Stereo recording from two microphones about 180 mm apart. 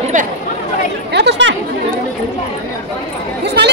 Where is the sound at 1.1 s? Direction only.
70° right (ahead or behind).